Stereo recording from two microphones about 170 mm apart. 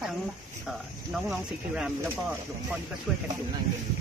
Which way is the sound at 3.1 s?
Centre (ahead or behind).